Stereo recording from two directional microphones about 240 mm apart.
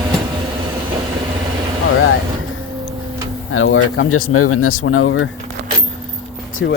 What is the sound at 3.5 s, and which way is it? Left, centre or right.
Speech, left.